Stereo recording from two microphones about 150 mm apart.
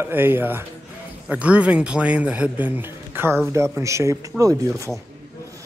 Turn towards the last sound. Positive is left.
turn(degrees=-20)  # may be behind; listen again after turning